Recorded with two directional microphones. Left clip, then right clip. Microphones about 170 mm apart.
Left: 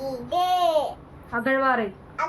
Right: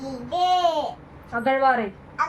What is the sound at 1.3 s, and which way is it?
Speech, 10° left (ahead or behind).